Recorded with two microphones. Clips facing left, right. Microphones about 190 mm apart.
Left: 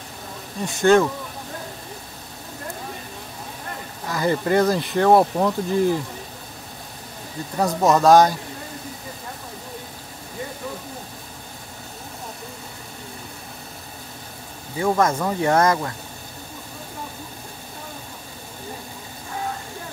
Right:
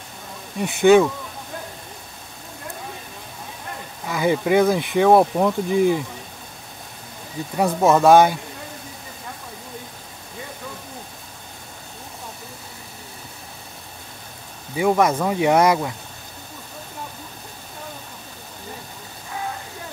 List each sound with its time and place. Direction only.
0.8 s speech: 5° right (ahead or behind)
4.1 s speech: 5° right (ahead or behind)
7.5 s speech: 5° right (ahead or behind)
14.8 s speech: 10° right (ahead or behind)